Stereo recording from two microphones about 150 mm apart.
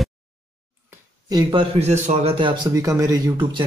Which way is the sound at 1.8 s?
45° right (ahead or behind).